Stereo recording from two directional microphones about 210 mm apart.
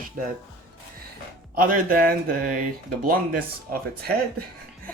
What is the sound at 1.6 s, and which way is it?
Speech, 40° right (ahead or behind).